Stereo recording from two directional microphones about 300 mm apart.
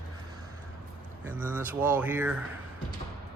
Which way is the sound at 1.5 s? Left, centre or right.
Centre.